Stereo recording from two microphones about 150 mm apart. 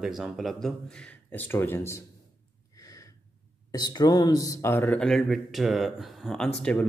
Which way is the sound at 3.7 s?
25° left (ahead or behind).